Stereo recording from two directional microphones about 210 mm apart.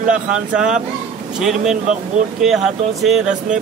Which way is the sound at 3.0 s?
5° right (ahead or behind).